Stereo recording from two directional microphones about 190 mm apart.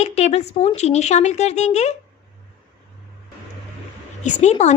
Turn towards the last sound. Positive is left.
turn(degrees=35)  # may be behind; listen again after turning